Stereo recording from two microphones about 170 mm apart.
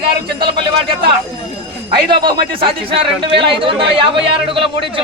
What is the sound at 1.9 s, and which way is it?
A man's voice, 25° right (ahead or behind).